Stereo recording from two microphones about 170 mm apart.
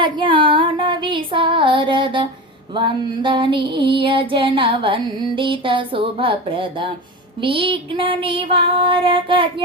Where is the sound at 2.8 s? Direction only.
30° right (ahead or behind).